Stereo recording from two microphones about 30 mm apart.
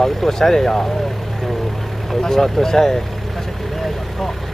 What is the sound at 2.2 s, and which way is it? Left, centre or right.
Speech, centre.